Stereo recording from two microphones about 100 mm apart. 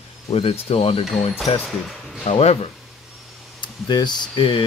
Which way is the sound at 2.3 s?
80° left.